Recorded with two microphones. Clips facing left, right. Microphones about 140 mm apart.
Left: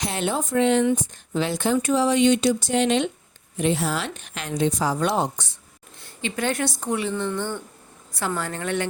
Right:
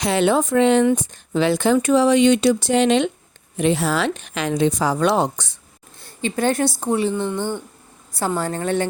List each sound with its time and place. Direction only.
0.0 s a woman's voice: 85° right
6.0 s a woman's voice: 35° right (ahead or behind)